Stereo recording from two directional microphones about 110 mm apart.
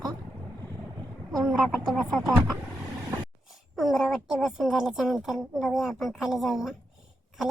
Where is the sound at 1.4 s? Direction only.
Centre (ahead or behind).